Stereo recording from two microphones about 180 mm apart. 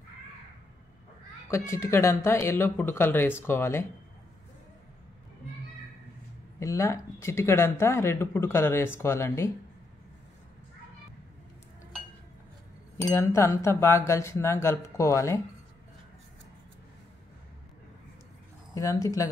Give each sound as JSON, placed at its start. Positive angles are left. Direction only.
{"t": 1.5, "sound": "speech", "side_deg": 15}
{"t": 6.6, "sound": "speech", "side_deg": 15}
{"t": 12.9, "sound": "speech", "side_deg": 15}
{"t": 18.8, "sound": "speech", "side_deg": 20}